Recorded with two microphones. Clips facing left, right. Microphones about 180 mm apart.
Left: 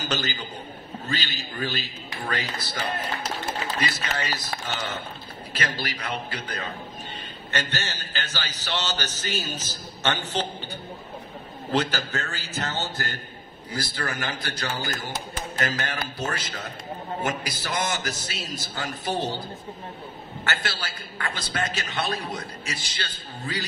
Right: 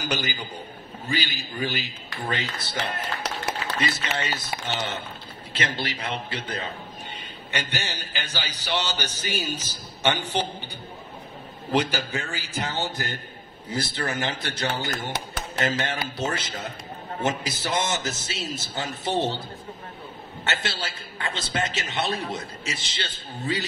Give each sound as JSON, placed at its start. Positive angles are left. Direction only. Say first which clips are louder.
{"t": 0.0, "sound": "a man's voice", "louder": "even", "side_deg": -15}
{"t": 2.8, "sound": "music", "louder": "even", "side_deg": -70}
{"t": 4.0, "sound": "a man's voice", "louder": "right 1 dB", "side_deg": -25}
{"t": 7.5, "sound": "a man's voice", "louder": "left 1 dB", "side_deg": -15}
{"t": 11.7, "sound": "a man's voice", "louder": "right 1 dB", "side_deg": -10}
{"t": 20.8, "sound": "a man's voice", "louder": "right 1 dB", "side_deg": -25}